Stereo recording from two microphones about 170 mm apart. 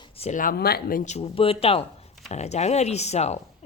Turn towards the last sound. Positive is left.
turn(degrees=40)  # may be behind; listen again after turning